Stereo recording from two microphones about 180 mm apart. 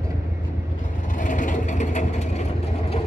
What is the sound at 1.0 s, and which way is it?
Vehicle, 45° left (ahead or behind).